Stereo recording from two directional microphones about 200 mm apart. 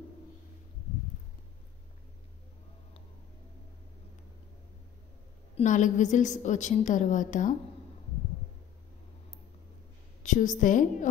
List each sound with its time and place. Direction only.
5.6 s a woman's voice: 40° left (ahead or behind)
10.2 s a woman's voice: 40° left (ahead or behind)